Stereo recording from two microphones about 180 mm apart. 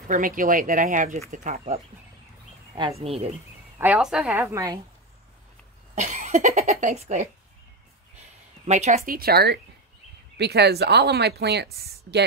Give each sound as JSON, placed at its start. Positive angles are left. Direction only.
{"t": 0.1, "sound": "speech", "side_deg": -50}
{"t": 2.7, "sound": "speech", "side_deg": -25}
{"t": 3.7, "sound": "a woman's voice", "side_deg": -10}
{"t": 5.9, "sound": "speech", "side_deg": -40}
{"t": 8.6, "sound": "speech", "side_deg": -40}